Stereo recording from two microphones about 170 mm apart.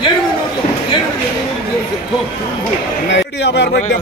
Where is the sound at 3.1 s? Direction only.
90° left.